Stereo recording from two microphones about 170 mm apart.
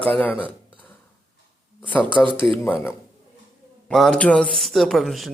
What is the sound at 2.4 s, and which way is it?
Speech, 10° left (ahead or behind).